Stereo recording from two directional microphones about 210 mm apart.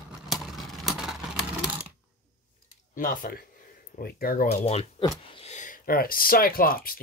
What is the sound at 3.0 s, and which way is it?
Speech, 40° left (ahead or behind).